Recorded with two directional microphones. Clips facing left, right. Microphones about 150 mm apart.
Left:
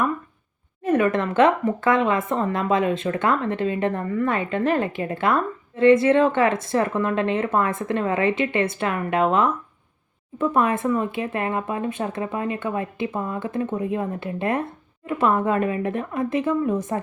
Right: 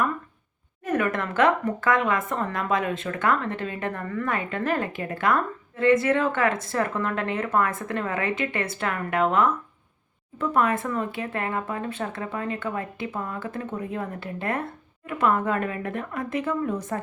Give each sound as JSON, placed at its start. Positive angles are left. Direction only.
{"t": 0.9, "sound": "speech", "side_deg": 25}